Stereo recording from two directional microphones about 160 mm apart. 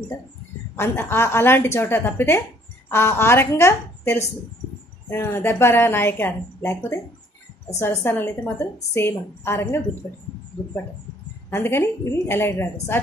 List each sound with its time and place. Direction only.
0.7 s a woman's voice: 15° left (ahead or behind)
11.5 s a woman's voice: 15° left (ahead or behind)